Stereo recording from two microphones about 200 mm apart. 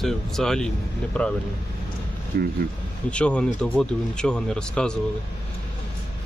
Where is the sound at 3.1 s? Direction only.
5° left (ahead or behind).